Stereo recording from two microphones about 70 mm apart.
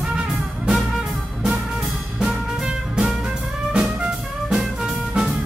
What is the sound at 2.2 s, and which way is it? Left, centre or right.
Music, centre.